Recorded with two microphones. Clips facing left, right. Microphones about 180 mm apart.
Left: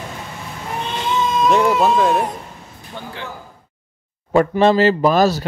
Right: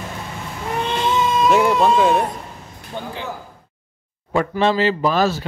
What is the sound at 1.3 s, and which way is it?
Speech, centre (ahead or behind).